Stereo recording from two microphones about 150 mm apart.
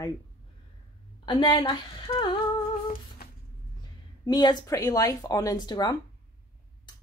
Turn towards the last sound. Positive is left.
turn(degrees=30)  # may be behind; listen again after turning